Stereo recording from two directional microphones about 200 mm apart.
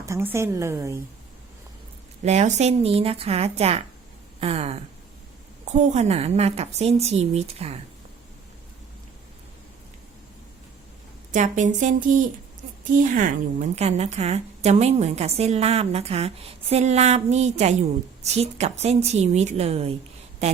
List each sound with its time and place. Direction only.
0.0 s a woman's voice: 10° right (ahead or behind)
2.2 s a woman's voice: 35° right (ahead or behind)
4.4 s a sound: 30° right (ahead or behind)
5.6 s a woman's voice: 35° right (ahead or behind)
11.3 s a woman's voice: 40° right (ahead or behind)